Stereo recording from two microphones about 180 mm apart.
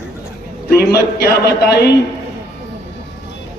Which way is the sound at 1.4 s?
65° left (ahead or behind).